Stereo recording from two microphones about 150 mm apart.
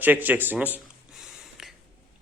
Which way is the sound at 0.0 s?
10° right (ahead or behind).